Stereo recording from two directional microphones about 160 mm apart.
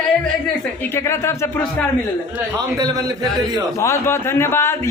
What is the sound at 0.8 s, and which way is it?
Speech, 15° left (ahead or behind).